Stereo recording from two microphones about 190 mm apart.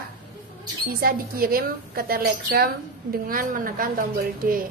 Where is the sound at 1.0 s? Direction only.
50° right (ahead or behind).